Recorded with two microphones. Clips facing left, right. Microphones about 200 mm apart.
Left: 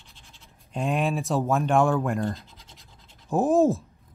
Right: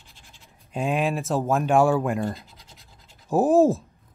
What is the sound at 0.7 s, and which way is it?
A man's voice, centre (ahead or behind).